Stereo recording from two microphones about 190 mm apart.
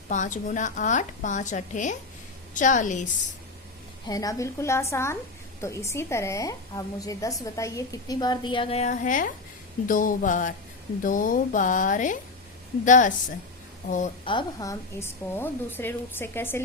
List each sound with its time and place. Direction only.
0.1 s a woman's voice: 40° left (ahead or behind)
4.0 s a woman's voice: 20° left (ahead or behind); by 13.1 s 40° left (ahead or behind)
14.3 s a woman's voice: 20° left (ahead or behind)